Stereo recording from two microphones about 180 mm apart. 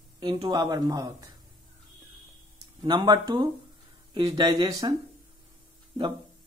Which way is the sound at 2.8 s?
20° right (ahead or behind).